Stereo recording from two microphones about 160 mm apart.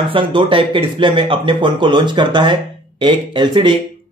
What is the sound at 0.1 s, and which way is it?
A man's voice, 30° right (ahead or behind).